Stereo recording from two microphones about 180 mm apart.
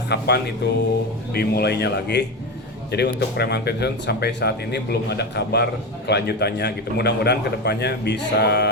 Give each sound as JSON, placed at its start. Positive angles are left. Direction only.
{"t": 0.1, "sound": "a man's voice", "side_deg": 65}